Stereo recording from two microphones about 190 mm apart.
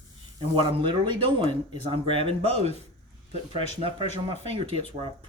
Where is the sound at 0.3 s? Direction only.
25° right (ahead or behind).